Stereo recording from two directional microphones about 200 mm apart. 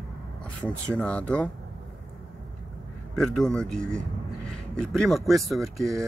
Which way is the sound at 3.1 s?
Centre (ahead or behind).